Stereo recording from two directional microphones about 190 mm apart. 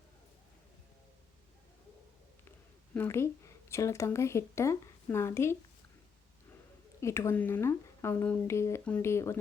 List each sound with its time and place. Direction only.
2.9 s speech: 10° left (ahead or behind)
7.0 s speech: 15° left (ahead or behind)